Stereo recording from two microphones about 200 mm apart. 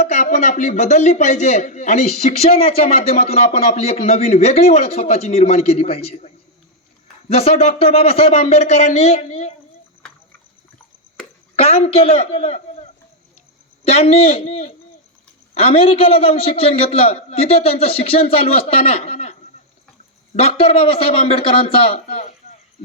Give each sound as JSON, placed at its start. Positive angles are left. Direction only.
{"t": 0.0, "sound": "a man's voice", "side_deg": 40}
{"t": 11.5, "sound": "a man's voice", "side_deg": 30}